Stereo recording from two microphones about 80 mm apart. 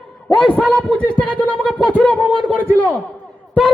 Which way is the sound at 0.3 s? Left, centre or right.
Centre.